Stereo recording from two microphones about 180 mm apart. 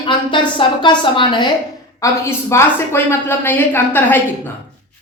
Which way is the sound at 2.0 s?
15° left (ahead or behind).